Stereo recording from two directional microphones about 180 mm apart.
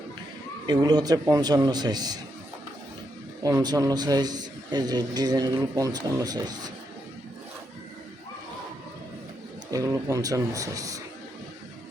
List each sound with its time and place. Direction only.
0.7 s a man's voice: 20° right (ahead or behind)
3.4 s a man's voice: 20° right (ahead or behind)
9.7 s a man's voice: 20° right (ahead or behind)